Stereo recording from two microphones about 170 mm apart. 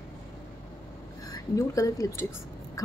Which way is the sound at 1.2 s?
20° left (ahead or behind).